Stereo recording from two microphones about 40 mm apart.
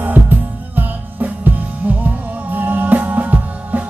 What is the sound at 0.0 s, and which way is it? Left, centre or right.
Music, right.